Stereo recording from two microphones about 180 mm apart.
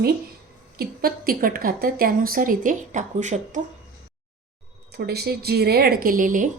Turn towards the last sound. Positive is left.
turn(degrees=-45)  # may be behind; listen again after turning